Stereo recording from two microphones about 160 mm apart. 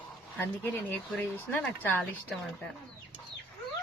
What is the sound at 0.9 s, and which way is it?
A woman's voice, 10° left (ahead or behind).